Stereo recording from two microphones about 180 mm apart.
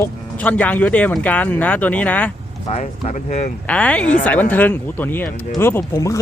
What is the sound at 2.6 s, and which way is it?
Speech, 35° left (ahead or behind).